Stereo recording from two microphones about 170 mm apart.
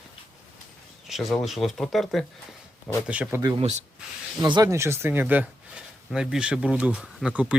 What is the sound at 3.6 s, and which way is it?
Speech, 40° right (ahead or behind).